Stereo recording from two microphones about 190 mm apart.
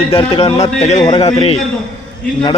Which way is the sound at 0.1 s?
30° left (ahead or behind).